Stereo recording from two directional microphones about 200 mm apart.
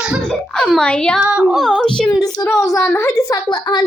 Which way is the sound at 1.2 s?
5° right (ahead or behind).